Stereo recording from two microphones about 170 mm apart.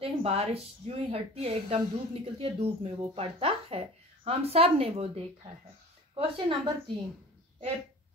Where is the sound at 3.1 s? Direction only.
35° right (ahead or behind).